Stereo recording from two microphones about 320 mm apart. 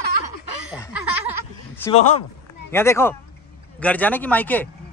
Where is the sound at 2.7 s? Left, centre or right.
Centre.